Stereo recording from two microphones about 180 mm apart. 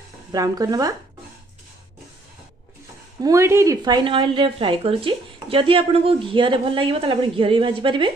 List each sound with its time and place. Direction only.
0.3 s a woman's voice: 20° right (ahead or behind)
3.3 s a woman's voice: 15° right (ahead or behind)